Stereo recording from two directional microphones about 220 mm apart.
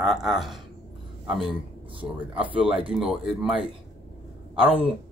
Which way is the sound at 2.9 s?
Centre (ahead or behind).